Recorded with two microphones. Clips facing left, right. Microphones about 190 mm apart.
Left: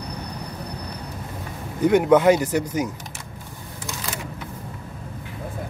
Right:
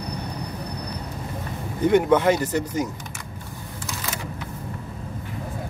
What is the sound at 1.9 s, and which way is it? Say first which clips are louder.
Speech: left 2 dB; 10° left (ahead or behind).